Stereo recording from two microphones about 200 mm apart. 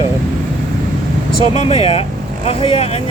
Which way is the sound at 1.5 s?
35° left (ahead or behind).